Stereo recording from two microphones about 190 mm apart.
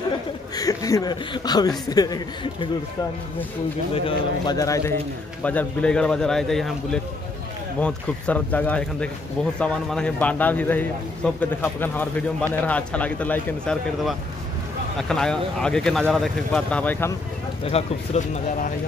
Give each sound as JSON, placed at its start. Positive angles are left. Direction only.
{"t": 0.6, "sound": "speech", "side_deg": 20}
{"t": 3.9, "sound": "speech", "side_deg": 25}
{"t": 17.6, "sound": "speech", "side_deg": 35}